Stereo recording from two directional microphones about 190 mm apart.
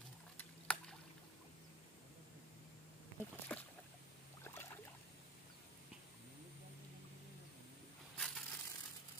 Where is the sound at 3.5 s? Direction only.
10° left (ahead or behind).